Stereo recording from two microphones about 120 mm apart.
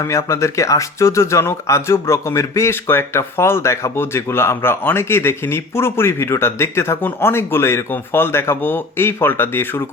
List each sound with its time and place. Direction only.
0.0 s speech: 25° left (ahead or behind)